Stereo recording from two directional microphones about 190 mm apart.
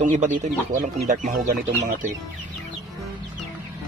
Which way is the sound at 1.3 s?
50° right (ahead or behind).